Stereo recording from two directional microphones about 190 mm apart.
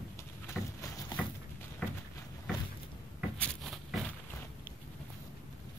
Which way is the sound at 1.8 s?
5° right (ahead or behind).